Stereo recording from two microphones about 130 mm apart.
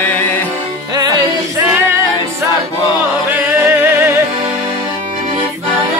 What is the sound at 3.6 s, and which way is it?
Music, 20° right (ahead or behind).